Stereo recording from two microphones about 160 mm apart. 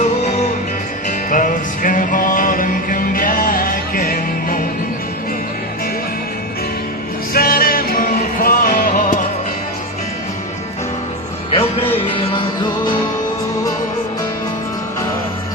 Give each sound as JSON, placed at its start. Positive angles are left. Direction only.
{"t": 1.3, "sound": "music", "side_deg": 55}
{"t": 7.3, "sound": "music", "side_deg": 70}
{"t": 11.5, "sound": "music", "side_deg": 35}